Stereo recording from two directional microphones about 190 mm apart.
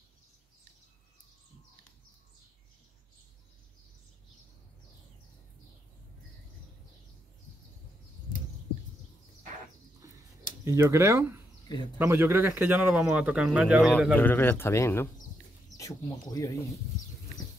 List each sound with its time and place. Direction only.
10.6 s speech: 15° right (ahead or behind); by 16.6 s 20° left (ahead or behind)